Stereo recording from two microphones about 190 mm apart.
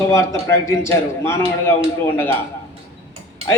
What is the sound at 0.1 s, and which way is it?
A man's voice, 15° left (ahead or behind).